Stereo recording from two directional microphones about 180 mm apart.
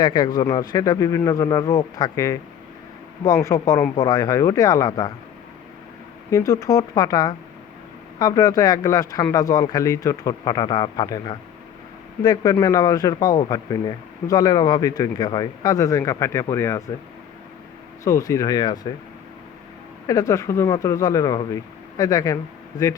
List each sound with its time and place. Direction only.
0.0 s speech: 25° left (ahead or behind)
6.3 s speech: 20° left (ahead or behind)
18.0 s speech: 20° left (ahead or behind)
20.1 s speech: 20° left (ahead or behind)